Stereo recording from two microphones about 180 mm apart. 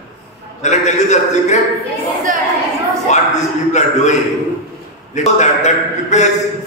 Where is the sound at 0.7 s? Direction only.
40° left (ahead or behind).